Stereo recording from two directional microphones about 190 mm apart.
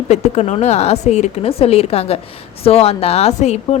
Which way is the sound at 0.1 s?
35° left (ahead or behind).